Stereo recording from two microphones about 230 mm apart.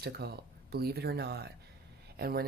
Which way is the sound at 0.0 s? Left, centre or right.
Right.